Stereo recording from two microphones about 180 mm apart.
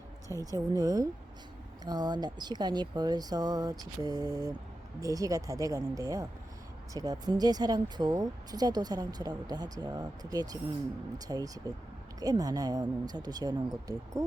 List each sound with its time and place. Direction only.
0.3 s speech: 15° left (ahead or behind)
0.7 s speech: 20° right (ahead or behind)